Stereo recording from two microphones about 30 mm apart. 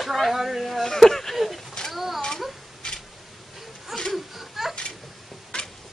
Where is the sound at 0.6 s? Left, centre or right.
Centre.